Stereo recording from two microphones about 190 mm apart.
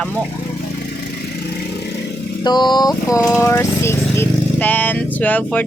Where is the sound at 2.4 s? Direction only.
20° left (ahead or behind).